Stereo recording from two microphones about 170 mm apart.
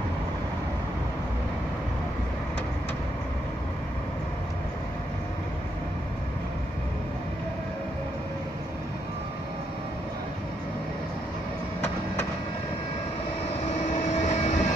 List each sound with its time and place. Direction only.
13.7 s vehicle: 45° left (ahead or behind)